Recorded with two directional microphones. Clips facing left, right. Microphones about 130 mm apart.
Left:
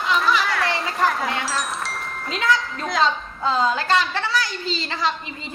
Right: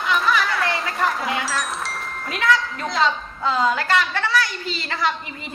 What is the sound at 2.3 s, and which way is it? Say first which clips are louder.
A woman's voice: right 1 dB; 25° left (ahead or behind).